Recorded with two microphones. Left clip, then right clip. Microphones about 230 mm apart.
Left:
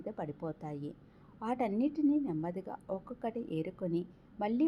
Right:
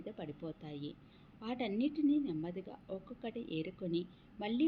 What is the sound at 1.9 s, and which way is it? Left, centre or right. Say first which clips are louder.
Speech: left 2 dB; centre.